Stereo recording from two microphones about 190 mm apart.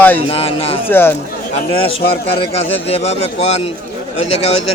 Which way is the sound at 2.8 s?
30° left (ahead or behind).